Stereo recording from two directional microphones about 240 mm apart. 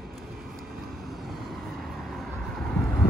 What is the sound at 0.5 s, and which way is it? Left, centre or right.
Vehicle, centre.